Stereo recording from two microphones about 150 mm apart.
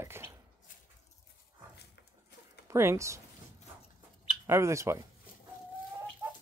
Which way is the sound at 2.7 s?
15° right (ahead or behind).